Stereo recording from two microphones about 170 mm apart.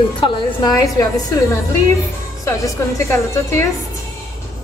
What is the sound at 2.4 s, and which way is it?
A woman's voice, 15° left (ahead or behind).